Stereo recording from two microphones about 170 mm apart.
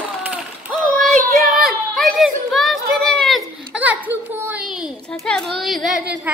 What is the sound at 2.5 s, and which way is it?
Child singing, centre (ahead or behind).